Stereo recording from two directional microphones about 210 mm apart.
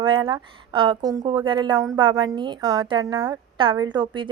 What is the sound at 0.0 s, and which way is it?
A woman's voice, 25° right (ahead or behind).